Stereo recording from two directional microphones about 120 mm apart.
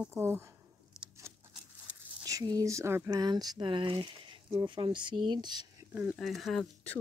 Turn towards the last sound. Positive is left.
turn(degrees=0)  # may be behind; listen again after turning